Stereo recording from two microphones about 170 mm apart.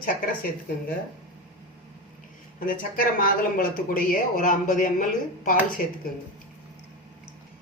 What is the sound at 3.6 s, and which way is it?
Speech, 55° left (ahead or behind).